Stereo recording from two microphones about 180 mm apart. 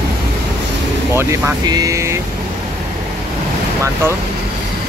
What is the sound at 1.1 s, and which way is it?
Speech, 15° right (ahead or behind).